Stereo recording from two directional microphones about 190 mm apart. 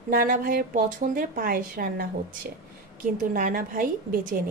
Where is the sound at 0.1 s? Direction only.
50° right (ahead or behind).